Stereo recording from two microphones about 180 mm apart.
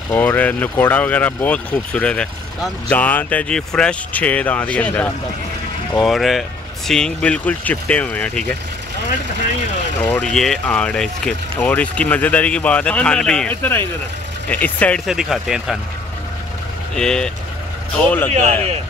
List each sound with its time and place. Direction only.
0.1 s speech: 10° left (ahead or behind)
10.0 s speech: 5° left (ahead or behind)
16.9 s speech: 5° left (ahead or behind)
18.3 s speech: 35° right (ahead or behind)